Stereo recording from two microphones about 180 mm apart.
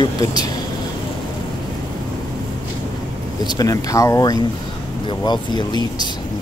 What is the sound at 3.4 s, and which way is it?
Speech, 20° left (ahead or behind).